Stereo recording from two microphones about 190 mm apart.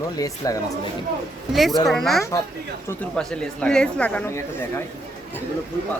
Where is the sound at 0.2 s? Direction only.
20° left (ahead or behind).